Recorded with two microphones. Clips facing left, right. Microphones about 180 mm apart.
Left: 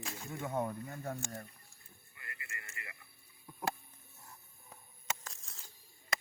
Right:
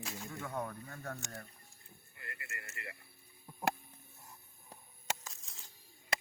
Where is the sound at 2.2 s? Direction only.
50° right (ahead or behind).